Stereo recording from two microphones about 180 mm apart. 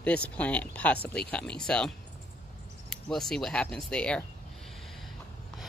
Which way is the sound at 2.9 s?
Centre (ahead or behind).